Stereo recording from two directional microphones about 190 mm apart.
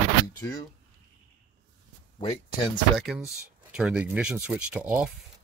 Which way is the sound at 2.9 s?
5° right (ahead or behind).